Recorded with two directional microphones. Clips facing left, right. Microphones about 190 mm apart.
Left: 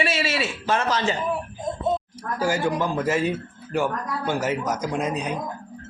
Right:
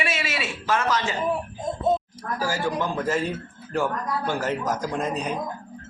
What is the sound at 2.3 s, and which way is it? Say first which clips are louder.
Speech: left 3 dB; 20° left (ahead or behind).